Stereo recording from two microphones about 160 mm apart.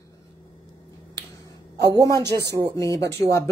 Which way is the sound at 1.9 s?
20° right (ahead or behind).